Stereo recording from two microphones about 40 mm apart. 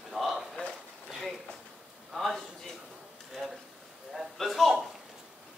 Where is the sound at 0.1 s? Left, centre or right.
Centre.